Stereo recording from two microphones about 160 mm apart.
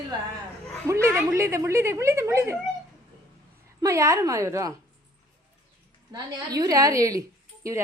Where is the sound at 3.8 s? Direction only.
20° right (ahead or behind).